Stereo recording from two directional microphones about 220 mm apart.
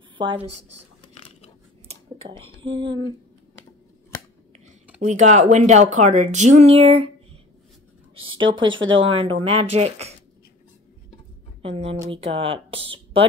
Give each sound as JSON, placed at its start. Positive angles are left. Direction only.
{"t": 0.2, "sound": "speech", "side_deg": -20}
{"t": 0.5, "sound": "speech", "side_deg": -90}
{"t": 1.9, "sound": "a sound", "side_deg": -25}
{"t": 2.7, "sound": "speech", "side_deg": -20}
{"t": 5.0, "sound": "speech", "side_deg": -30}
{"t": 8.1, "sound": "speech", "side_deg": -25}
{"t": 11.6, "sound": "speech", "side_deg": -25}